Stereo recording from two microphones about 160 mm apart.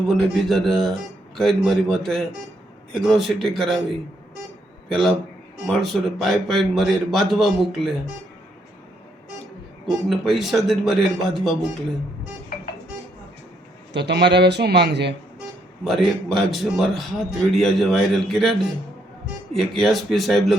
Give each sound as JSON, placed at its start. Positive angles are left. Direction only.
{"t": 0.3, "sound": "a man's voice", "side_deg": 0}
{"t": 9.8, "sound": "a man's voice", "side_deg": 0}
{"t": 13.9, "sound": "a man's voice", "side_deg": -90}
{"t": 16.3, "sound": "a man's voice", "side_deg": 0}